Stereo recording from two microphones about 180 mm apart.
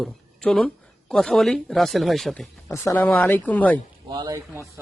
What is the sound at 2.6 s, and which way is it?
Speech, 15° left (ahead or behind).